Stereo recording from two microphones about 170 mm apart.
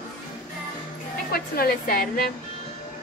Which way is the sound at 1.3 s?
60° left (ahead or behind).